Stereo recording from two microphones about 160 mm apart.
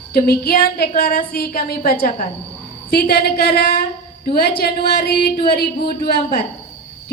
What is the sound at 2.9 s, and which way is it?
A woman's voice, 80° left.